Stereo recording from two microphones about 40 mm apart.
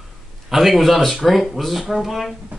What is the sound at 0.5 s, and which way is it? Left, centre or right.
Speech, centre.